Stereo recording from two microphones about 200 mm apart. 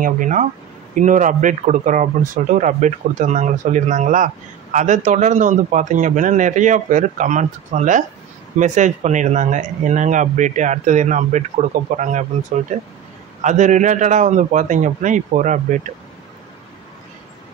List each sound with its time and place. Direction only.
0.0 s speech: 40° right (ahead or behind)